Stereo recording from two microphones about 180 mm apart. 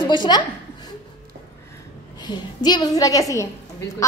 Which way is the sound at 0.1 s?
25° left (ahead or behind).